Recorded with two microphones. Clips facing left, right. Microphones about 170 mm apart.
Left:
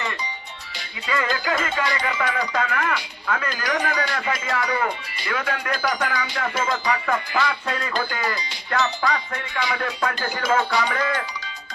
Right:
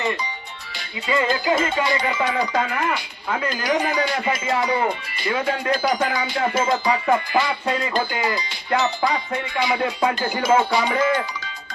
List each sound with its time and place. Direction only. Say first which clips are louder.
1.0 s music: right 4 dB; 20° right (ahead or behind)